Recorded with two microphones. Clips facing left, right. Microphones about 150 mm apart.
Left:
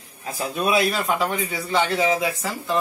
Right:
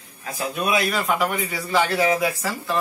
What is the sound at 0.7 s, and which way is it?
Speech, 30° left (ahead or behind).